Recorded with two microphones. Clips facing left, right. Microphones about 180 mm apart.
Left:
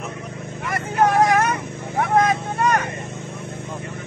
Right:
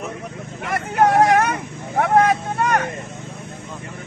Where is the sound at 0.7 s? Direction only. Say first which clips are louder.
Right 2 dB; 65° right (ahead or behind).